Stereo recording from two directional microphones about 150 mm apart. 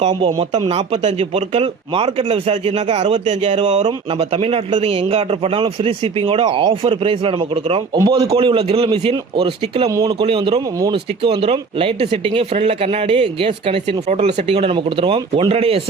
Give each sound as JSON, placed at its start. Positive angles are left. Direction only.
{"t": 0.7, "sound": "speech", "side_deg": -45}
{"t": 7.9, "sound": "a man's voice", "side_deg": -20}
{"t": 8.3, "sound": "speech", "side_deg": -40}
{"t": 14.1, "sound": "speech", "side_deg": -50}